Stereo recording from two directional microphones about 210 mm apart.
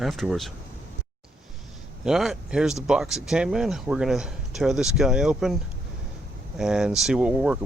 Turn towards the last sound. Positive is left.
turn(degrees=-5)  # may be behind; listen again after turning